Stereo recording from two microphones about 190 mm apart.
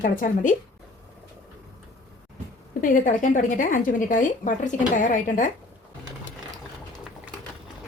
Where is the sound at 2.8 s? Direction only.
45° left (ahead or behind).